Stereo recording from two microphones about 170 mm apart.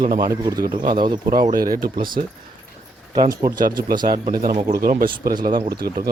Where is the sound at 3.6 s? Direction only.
55° right (ahead or behind).